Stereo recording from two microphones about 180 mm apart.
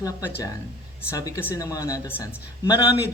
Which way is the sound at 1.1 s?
20° left (ahead or behind).